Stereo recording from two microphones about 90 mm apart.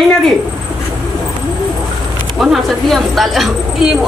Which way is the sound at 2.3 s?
Centre (ahead or behind).